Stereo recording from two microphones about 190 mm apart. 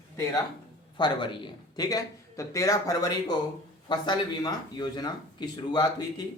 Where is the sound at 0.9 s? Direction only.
25° left (ahead or behind).